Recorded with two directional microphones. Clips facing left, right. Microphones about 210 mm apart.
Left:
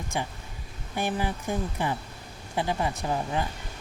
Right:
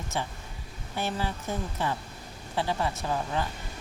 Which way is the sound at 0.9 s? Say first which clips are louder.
Left 3 dB; 15° left (ahead or behind).